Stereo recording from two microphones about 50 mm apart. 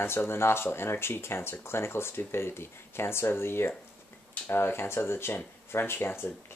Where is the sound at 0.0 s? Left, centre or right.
Left.